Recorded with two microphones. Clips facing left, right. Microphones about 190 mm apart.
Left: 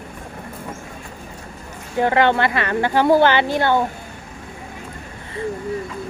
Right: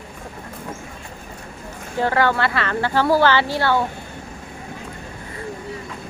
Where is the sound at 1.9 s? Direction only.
20° left (ahead or behind).